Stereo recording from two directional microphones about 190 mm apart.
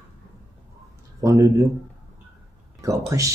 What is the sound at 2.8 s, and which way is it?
Speech, 15° right (ahead or behind).